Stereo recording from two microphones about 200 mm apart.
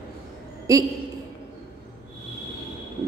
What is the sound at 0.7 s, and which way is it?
Mantra, 15° right (ahead or behind).